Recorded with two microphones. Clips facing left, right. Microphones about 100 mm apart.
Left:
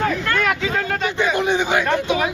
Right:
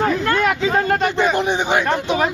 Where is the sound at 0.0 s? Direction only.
25° right (ahead or behind).